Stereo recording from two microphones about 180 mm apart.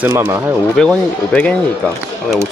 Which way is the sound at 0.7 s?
5° left (ahead or behind).